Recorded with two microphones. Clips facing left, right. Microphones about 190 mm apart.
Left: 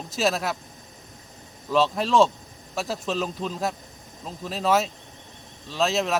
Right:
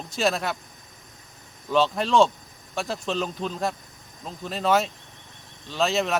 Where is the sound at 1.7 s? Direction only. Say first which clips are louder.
Even; centre (ahead or behind).